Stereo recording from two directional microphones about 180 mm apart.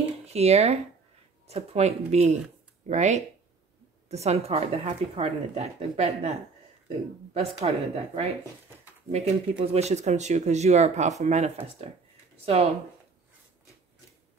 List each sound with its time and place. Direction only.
0.3 s speech: 35° right (ahead or behind)